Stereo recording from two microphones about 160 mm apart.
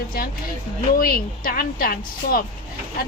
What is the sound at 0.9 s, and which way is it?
Speech, 65° left (ahead or behind).